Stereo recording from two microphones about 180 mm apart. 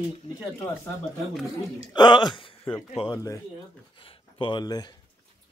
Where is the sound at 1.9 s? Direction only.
25° left (ahead or behind).